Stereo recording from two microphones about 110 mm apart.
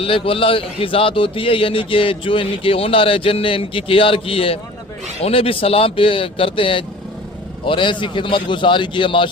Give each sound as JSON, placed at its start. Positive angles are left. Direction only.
{"t": 0.0, "sound": "a man's voice", "side_deg": 55}